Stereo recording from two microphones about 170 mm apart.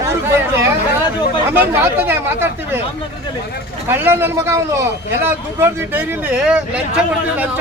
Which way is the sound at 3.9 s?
15° right (ahead or behind).